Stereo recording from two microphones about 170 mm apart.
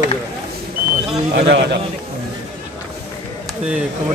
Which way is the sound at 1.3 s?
75° right (ahead or behind).